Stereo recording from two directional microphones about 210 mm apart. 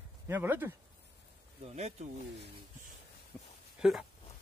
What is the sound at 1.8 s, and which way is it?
Speech, 30° right (ahead or behind).